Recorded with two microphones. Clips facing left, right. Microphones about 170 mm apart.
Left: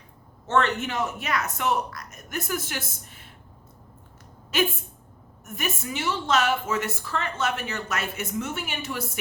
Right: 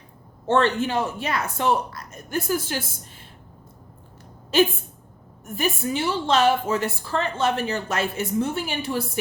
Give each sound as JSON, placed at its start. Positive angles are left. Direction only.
{"t": 0.4, "sound": "a woman's voice", "side_deg": -30}
{"t": 4.5, "sound": "a woman's voice", "side_deg": -30}